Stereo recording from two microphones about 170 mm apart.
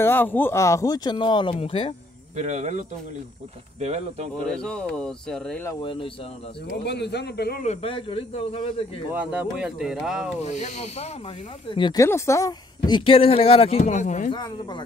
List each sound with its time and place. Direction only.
0.0 s speech: 10° left (ahead or behind); by 2.0 s 35° left (ahead or behind)
2.3 s speech: 40° right (ahead or behind)
3.8 s speech: 40° right (ahead or behind)
4.5 s speech: 5° left (ahead or behind)
5.8 s speech: 30° left (ahead or behind)
6.8 s a man's voice: 80° left
7.6 s speech: 35° left (ahead or behind)
9.1 s speech: 10° right (ahead or behind)
10.4 s speech: 45° left (ahead or behind)
14.3 s speech: 25° left (ahead or behind)